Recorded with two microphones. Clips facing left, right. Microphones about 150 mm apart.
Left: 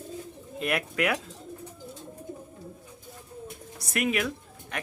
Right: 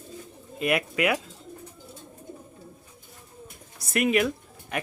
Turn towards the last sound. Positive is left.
turn(degrees=-5)  # may be behind; listen again after turning